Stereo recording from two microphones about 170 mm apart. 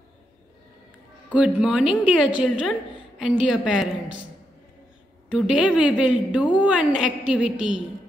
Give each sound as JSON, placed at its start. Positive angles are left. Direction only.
{"t": 1.3, "sound": "a woman's voice", "side_deg": -5}
{"t": 5.3, "sound": "a woman's voice", "side_deg": -5}